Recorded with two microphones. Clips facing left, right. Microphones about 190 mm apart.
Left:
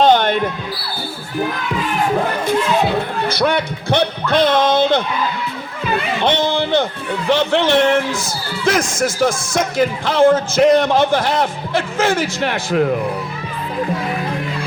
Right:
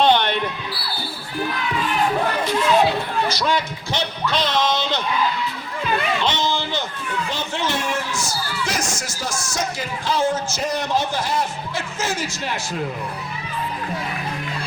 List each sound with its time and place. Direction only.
0.0 s basketball bounce: 45° left (ahead or behind)
3.2 s a man's voice: 60° left (ahead or behind)
6.1 s a sound: 60° left (ahead or behind)
7.3 s a man's voice: 65° left (ahead or behind)